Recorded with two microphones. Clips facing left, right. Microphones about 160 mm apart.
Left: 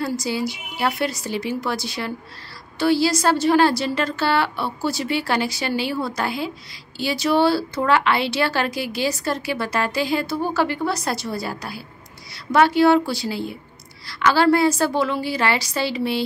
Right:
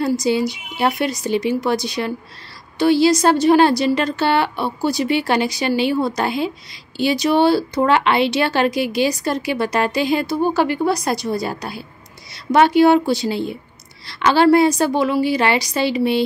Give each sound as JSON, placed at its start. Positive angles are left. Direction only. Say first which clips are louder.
{"t": 0.0, "sound": "a woman's voice", "louder": "right 6 dB", "side_deg": -20}